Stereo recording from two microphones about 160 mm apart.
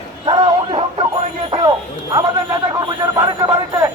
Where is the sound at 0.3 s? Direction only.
30° right (ahead or behind).